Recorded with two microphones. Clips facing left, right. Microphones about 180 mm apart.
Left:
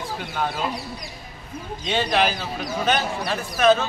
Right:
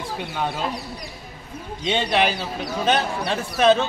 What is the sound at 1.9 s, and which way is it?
Speech, 20° right (ahead or behind).